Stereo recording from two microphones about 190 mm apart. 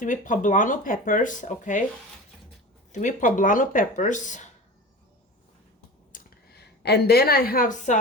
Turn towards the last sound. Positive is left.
turn(degrees=40)  # may be behind; listen again after turning